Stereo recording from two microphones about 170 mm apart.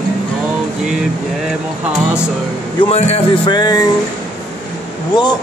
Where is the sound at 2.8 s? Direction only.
40° left (ahead or behind).